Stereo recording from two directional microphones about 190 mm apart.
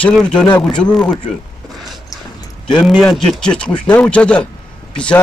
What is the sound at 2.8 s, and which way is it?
Speech, centre (ahead or behind).